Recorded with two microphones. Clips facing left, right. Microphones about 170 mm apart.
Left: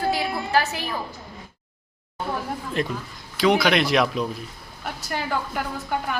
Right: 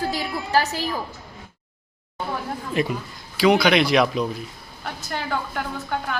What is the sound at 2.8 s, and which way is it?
A woman's voice, 5° right (ahead or behind).